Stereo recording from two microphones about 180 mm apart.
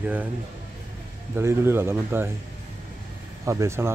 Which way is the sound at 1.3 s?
15° right (ahead or behind).